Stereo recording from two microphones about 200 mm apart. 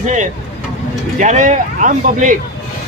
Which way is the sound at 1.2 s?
40° right (ahead or behind).